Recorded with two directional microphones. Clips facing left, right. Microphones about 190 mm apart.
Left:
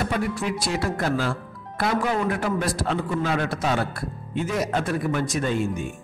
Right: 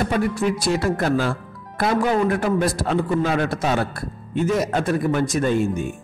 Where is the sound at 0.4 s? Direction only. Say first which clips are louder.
Right 5 dB; 45° right (ahead or behind).